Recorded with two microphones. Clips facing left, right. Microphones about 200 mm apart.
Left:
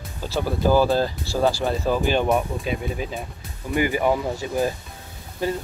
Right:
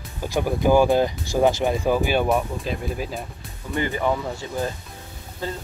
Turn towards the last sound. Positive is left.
turn(degrees=15)  # may be behind; listen again after turning